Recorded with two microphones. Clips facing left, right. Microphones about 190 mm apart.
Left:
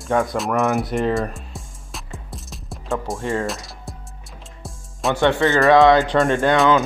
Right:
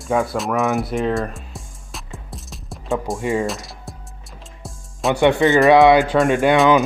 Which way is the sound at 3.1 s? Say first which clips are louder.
Right 3 dB; 15° right (ahead or behind).